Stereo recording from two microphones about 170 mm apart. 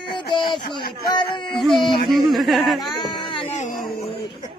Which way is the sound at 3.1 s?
30° left (ahead or behind).